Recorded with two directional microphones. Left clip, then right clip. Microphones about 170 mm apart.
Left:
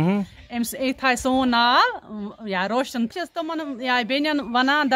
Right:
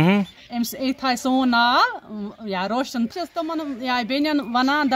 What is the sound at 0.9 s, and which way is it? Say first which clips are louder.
Speech: left 1 dB; 35° left (ahead or behind).